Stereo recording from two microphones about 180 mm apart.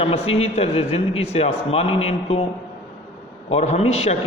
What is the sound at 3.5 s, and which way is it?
Speech, 35° left (ahead or behind).